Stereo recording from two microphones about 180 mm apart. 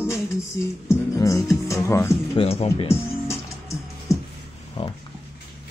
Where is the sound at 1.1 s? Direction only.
15° left (ahead or behind).